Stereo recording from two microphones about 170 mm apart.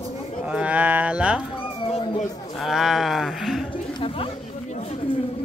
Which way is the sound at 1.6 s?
35° left (ahead or behind).